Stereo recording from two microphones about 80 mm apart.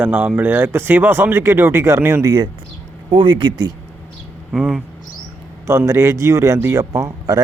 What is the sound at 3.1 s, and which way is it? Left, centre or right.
Speech, right.